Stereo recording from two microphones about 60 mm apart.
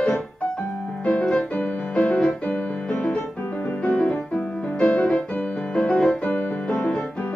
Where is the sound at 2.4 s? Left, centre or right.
Left.